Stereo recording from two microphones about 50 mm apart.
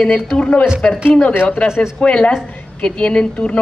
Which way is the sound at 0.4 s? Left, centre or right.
Left.